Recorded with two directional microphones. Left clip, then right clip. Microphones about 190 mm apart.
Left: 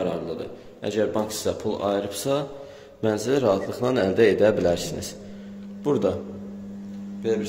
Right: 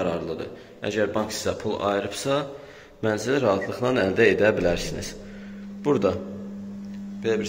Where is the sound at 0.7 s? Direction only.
15° left (ahead or behind).